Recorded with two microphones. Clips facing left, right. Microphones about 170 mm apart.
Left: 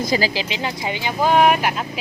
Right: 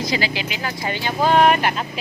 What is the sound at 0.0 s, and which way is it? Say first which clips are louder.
Speech: left 3 dB; 45° left (ahead or behind).